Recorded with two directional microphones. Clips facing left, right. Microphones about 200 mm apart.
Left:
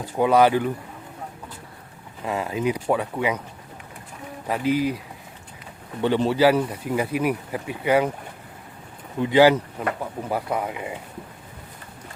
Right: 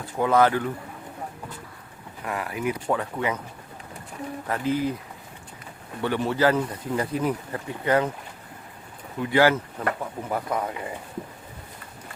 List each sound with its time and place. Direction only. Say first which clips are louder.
0.0 s speech: left 3 dB; 15° left (ahead or behind)
2.2 s speech: left 4 dB; 25° left (ahead or behind)
4.4 s speech: left 4 dB; 15° left (ahead or behind)
6.0 s speech: left 4 dB; 20° left (ahead or behind)
9.2 s speech: left 4 dB; 20° left (ahead or behind)